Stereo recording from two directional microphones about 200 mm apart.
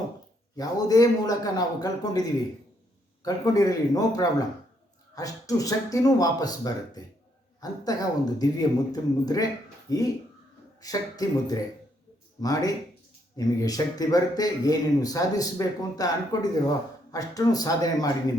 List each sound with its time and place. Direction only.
0.5 s a man's voice: 20° left (ahead or behind)
3.2 s a man's voice: 20° left (ahead or behind)